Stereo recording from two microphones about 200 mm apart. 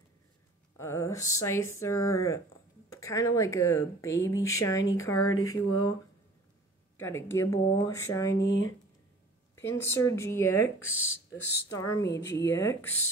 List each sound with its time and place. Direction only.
0.7 s speech: 15° left (ahead or behind)
5.1 s speech: 90° left
7.0 s speech: 10° left (ahead or behind)
8.5 s speech: 70° left (ahead or behind)
9.6 s speech: 15° left (ahead or behind)
10.9 s speech: 90° left
11.3 s speech: 15° left (ahead or behind)
12.1 s speech: 60° left (ahead or behind)
12.5 s speech: 10° left (ahead or behind)